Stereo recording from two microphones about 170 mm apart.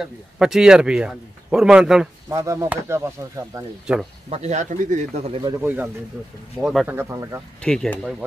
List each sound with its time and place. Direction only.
0.0 s a man's voice: 5° right (ahead or behind)
2.2 s speech: 20° right (ahead or behind)
3.8 s a man's voice: 5° right (ahead or behind)
4.3 s speech: 40° right (ahead or behind)
5.6 s speech: 10° right (ahead or behind)
6.6 s a man's voice: centre (ahead or behind)
6.9 s speech: 15° right (ahead or behind)
7.6 s a man's voice: 5° left (ahead or behind)